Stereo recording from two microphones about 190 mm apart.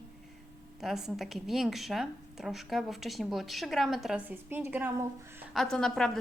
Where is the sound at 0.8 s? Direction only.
Centre (ahead or behind).